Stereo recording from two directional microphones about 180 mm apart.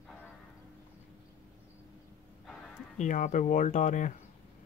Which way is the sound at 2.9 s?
45° left (ahead or behind).